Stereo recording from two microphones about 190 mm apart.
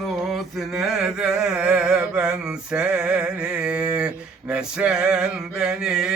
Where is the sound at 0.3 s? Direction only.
Centre (ahead or behind).